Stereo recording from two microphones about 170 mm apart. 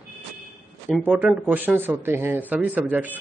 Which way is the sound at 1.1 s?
10° right (ahead or behind).